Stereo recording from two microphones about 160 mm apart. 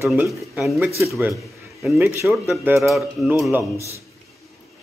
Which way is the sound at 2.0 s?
15° right (ahead or behind).